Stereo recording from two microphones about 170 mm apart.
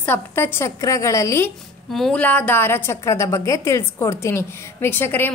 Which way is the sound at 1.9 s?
5° left (ahead or behind).